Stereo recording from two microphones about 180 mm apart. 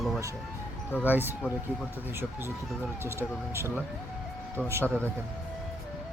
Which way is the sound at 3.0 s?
15° right (ahead or behind).